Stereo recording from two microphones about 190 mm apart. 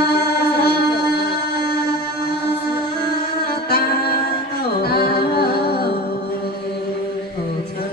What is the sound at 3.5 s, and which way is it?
Music, 55° left (ahead or behind).